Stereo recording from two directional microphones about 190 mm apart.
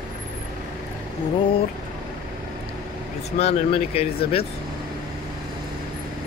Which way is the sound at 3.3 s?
30° left (ahead or behind).